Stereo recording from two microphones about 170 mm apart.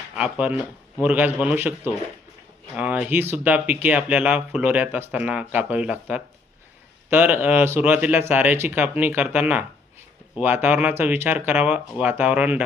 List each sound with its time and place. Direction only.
0.2 s speech: 5° right (ahead or behind)